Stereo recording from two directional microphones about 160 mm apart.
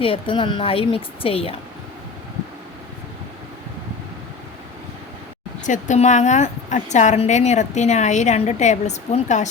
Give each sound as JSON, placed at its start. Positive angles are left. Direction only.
{"t": 0.0, "sound": "a woman's voice", "side_deg": 35}
{"t": 5.6, "sound": "a woman's voice", "side_deg": 50}